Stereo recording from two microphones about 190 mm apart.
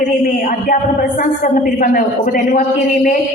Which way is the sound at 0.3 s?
45° left (ahead or behind).